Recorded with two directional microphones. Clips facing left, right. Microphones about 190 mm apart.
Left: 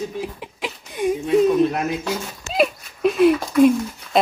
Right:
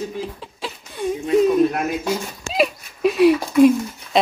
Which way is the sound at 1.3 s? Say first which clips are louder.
Right 1 dB; centre (ahead or behind).